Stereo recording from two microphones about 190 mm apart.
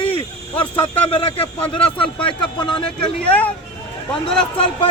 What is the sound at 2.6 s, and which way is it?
Speech, 25° left (ahead or behind).